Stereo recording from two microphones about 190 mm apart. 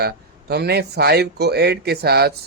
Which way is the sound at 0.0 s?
55° right (ahead or behind).